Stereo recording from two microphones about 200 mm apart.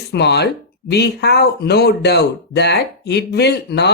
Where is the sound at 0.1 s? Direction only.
55° left (ahead or behind).